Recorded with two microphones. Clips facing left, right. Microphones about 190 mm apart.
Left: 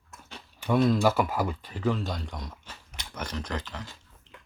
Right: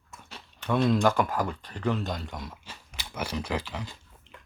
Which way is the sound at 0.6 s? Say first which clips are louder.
Left 1 dB; 5° left (ahead or behind).